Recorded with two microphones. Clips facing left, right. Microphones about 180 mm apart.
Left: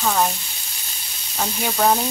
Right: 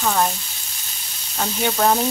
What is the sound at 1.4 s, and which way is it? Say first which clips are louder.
Speech: right 1 dB; centre (ahead or behind).